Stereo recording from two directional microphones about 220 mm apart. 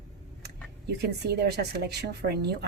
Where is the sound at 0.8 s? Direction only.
50° right (ahead or behind).